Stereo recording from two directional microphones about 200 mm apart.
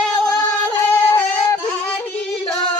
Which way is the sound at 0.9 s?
10° left (ahead or behind).